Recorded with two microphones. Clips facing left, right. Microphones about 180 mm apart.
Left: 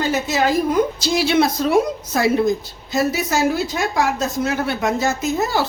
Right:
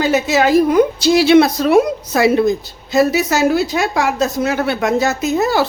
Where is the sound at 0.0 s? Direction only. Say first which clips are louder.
Right 5 dB; 80° right.